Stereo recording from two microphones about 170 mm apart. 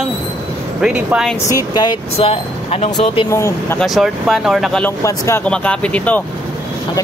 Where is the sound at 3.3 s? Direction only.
15° left (ahead or behind).